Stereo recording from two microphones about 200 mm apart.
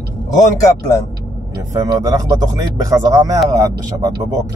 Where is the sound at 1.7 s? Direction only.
20° right (ahead or behind).